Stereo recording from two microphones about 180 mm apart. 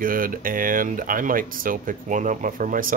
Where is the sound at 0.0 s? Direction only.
50° right (ahead or behind).